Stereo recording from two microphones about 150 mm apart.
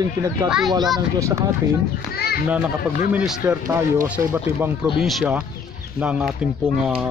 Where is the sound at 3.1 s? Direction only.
10° right (ahead or behind).